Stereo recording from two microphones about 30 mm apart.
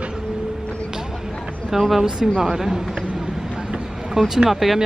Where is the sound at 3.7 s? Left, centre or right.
Right.